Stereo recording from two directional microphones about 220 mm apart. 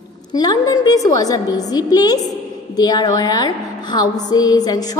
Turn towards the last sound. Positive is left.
turn(degrees=15)  # may be behind; listen again after turning